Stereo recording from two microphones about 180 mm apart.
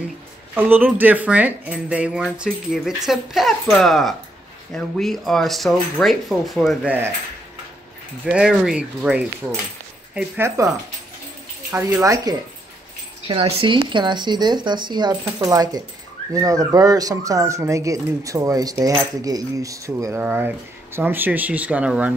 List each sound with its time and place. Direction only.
0.6 s speech: 10° right (ahead or behind)
8.3 s speech: 5° right (ahead or behind)
11.7 s speech: 15° right (ahead or behind)
13.3 s speech: 30° right (ahead or behind); by 22.1 s 5° right (ahead or behind)